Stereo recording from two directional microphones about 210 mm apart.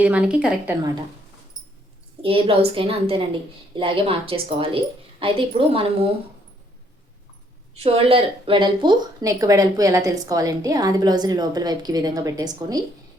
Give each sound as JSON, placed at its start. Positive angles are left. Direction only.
{"t": 0.0, "sound": "speech", "side_deg": -5}
{"t": 2.2, "sound": "speech", "side_deg": -25}
{"t": 7.8, "sound": "speech", "side_deg": -30}